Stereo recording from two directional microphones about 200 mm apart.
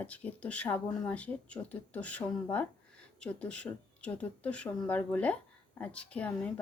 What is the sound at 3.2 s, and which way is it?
A woman's voice, 5° left (ahead or behind).